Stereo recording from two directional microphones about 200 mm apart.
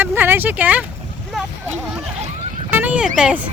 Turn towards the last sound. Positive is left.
turn(degrees=-5)  # may be behind; listen again after turning